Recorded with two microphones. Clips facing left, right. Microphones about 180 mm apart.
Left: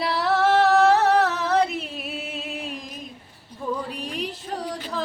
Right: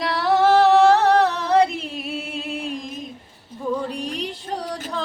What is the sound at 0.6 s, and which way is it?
Music, 30° right (ahead or behind).